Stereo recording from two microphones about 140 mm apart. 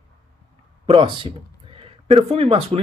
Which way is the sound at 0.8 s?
40° right (ahead or behind).